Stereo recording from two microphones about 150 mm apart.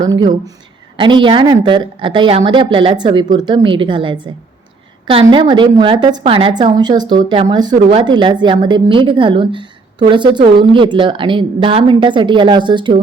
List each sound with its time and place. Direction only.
0.0 s a woman's voice: 30° right (ahead or behind)